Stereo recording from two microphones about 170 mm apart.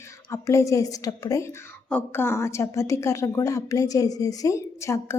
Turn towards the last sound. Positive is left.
turn(degrees=15)  # may be behind; listen again after turning